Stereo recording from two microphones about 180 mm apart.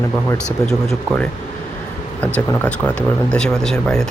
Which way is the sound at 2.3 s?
5° left (ahead or behind).